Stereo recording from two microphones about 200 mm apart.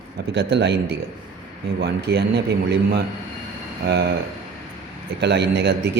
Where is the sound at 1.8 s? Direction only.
55° right (ahead or behind).